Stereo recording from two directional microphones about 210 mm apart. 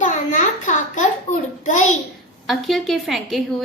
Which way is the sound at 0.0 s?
35° left (ahead or behind).